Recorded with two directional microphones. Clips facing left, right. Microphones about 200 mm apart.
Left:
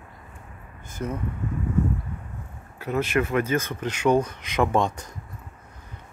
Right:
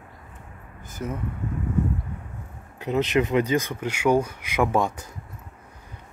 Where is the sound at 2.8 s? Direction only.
20° right (ahead or behind).